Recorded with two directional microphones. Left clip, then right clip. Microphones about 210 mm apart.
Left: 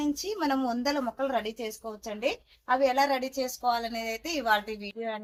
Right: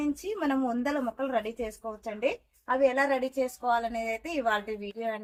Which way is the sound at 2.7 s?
15° right (ahead or behind).